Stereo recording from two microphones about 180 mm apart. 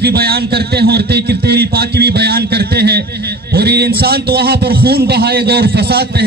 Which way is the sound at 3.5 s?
65° right (ahead or behind).